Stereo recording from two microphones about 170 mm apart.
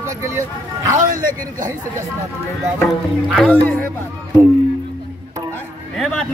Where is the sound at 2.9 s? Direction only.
Centre (ahead or behind).